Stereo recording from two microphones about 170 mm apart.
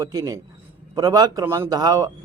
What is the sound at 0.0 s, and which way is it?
A man's voice, 20° right (ahead or behind).